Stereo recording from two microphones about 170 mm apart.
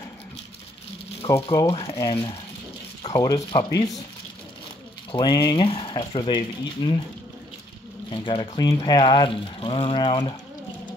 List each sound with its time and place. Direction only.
1.3 s speech: 20° left (ahead or behind)
5.1 s speech: 25° left (ahead or behind)
8.1 s speech: 30° left (ahead or behind)